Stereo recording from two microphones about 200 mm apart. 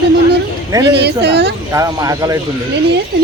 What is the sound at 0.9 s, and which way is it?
Speech, 60° right (ahead or behind).